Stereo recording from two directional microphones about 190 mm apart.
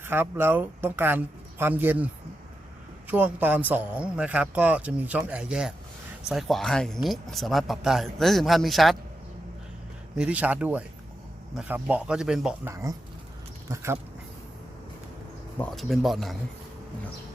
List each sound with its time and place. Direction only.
0.0 s a man's voice: 10° right (ahead or behind)
3.1 s a man's voice: 10° right (ahead or behind)
10.2 s a man's voice: 5° right (ahead or behind)
12.7 s a man's voice: 15° right (ahead or behind)
15.5 s speech: 5° left (ahead or behind)